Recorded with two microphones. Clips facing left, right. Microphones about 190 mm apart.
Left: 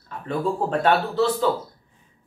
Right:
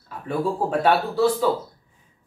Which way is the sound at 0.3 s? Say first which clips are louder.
Even; 10° right (ahead or behind).